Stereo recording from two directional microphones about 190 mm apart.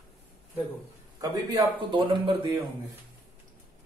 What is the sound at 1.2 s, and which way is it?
Speech, 20° right (ahead or behind).